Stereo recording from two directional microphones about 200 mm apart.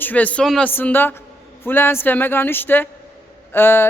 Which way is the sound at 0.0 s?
10° left (ahead or behind).